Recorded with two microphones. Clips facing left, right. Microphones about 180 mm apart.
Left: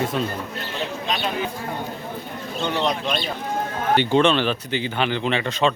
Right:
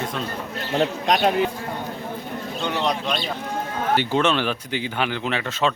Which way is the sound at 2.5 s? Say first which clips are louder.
Left 1 dB; 5° right (ahead or behind).